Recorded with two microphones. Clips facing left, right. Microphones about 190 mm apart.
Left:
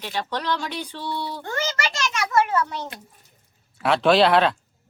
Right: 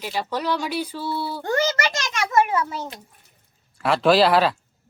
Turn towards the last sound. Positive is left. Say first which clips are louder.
# even
turn(degrees=0)  # may be behind; listen again after turning